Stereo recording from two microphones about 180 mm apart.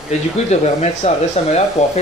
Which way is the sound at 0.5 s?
35° left (ahead or behind).